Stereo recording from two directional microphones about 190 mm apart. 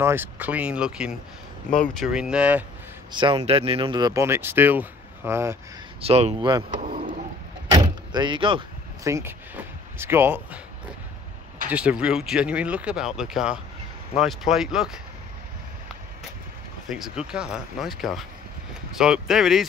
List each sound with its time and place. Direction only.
0.0 s speech: 10° right (ahead or behind)
3.1 s speech: 25° right (ahead or behind)
5.9 s speech: 30° right (ahead or behind)
6.7 s vehicle: 45° right (ahead or behind)
7.7 s door: 20° right (ahead or behind)
9.0 s speech: 15° right (ahead or behind)
11.7 s speech: 5° right (ahead or behind)
16.9 s speech: 5° right (ahead or behind)